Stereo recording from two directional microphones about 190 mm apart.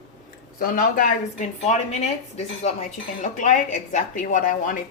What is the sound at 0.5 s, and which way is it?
A woman's voice, 50° left (ahead or behind).